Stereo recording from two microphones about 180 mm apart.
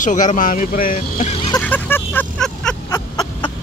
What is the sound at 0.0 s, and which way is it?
Speech, 45° left (ahead or behind).